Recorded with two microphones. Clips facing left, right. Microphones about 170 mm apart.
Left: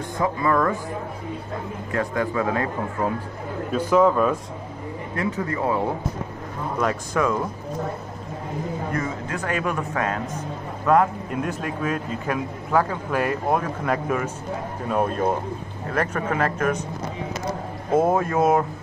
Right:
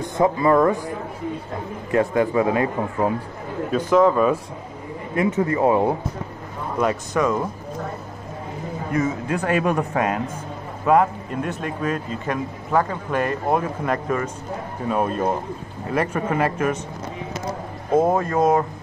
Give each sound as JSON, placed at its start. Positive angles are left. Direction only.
{"t": 0.2, "sound": "speech", "side_deg": -25}
{"t": 1.9, "sound": "speech", "side_deg": -20}
{"t": 3.7, "sound": "speech", "side_deg": 5}
{"t": 5.1, "sound": "speech", "side_deg": -20}
{"t": 6.8, "sound": "speech", "side_deg": 0}
{"t": 9.5, "sound": "speech", "side_deg": -20}
{"t": 10.9, "sound": "speech", "side_deg": 0}
{"t": 17.9, "sound": "speech", "side_deg": 5}